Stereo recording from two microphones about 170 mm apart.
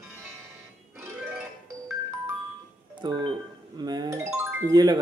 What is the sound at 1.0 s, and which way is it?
Music, 10° right (ahead or behind).